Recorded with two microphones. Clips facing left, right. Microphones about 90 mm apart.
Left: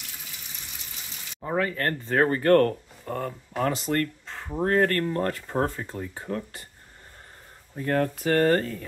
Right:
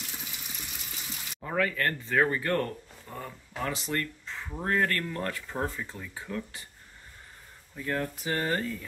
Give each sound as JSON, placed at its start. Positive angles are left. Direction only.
{"t": 1.4, "sound": "speech", "side_deg": 25}
{"t": 7.7, "sound": "speech", "side_deg": 50}